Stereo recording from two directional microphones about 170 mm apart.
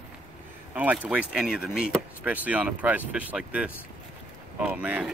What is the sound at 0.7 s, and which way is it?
Speech, 10° right (ahead or behind).